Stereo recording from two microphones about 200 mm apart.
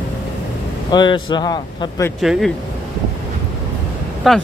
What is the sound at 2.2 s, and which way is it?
Speech, centre (ahead or behind).